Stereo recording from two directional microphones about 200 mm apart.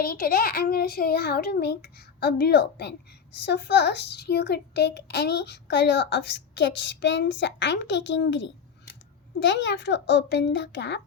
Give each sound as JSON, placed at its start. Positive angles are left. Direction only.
{"t": 0.0, "sound": "a child's voice", "side_deg": 45}